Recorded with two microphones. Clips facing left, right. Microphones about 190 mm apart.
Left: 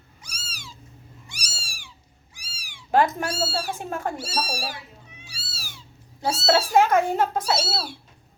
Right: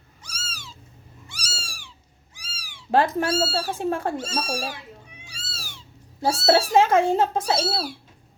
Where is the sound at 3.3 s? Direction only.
15° left (ahead or behind).